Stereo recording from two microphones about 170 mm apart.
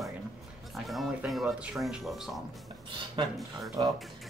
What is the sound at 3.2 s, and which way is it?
Speech, 30° right (ahead or behind).